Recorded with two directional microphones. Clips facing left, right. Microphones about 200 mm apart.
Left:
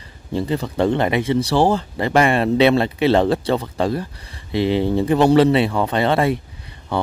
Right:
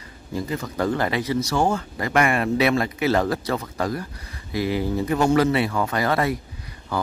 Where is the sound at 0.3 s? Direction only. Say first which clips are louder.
Left 6 dB; 30° left (ahead or behind).